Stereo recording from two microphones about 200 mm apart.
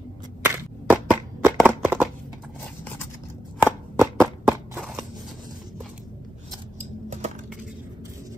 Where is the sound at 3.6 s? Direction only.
5° right (ahead or behind).